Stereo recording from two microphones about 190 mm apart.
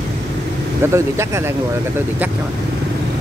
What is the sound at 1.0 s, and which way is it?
Speech, 15° right (ahead or behind).